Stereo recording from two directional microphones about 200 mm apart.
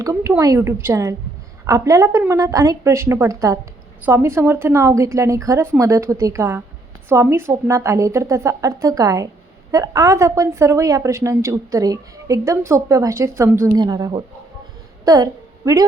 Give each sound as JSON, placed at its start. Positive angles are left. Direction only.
{"t": 0.0, "sound": "a woman's voice", "side_deg": -15}